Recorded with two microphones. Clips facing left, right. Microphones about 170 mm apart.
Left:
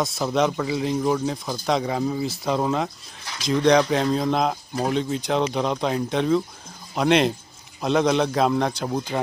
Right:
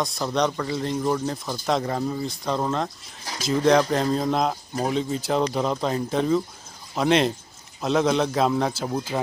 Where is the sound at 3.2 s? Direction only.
40° right (ahead or behind).